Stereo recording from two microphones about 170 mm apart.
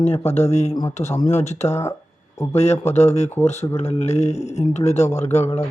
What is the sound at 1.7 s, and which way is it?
Speech, 15° left (ahead or behind).